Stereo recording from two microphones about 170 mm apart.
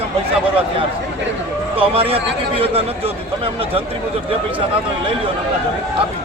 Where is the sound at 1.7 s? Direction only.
35° right (ahead or behind).